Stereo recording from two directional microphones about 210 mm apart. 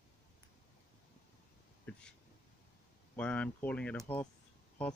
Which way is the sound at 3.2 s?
5° left (ahead or behind).